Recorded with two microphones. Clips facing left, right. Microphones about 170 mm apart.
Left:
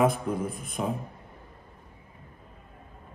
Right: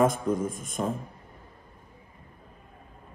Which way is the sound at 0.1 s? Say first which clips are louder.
Right 2 dB; 45° right (ahead or behind).